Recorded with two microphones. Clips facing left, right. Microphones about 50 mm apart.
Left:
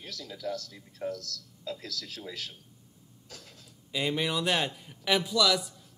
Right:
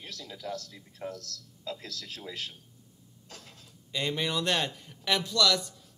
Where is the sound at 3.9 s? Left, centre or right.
Centre.